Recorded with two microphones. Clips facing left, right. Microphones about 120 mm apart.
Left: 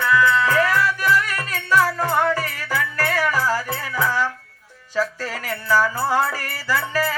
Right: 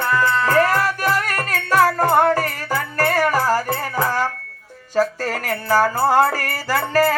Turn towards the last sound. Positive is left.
turn(degrees=-60)  # may be behind; listen again after turning